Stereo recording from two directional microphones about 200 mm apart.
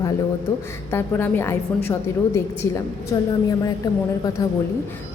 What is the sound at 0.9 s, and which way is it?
A woman's voice, 10° left (ahead or behind).